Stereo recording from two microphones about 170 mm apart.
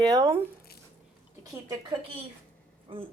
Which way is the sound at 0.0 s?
20° right (ahead or behind).